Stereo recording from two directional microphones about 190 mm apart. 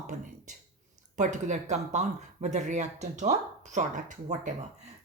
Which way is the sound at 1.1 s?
40° right (ahead or behind).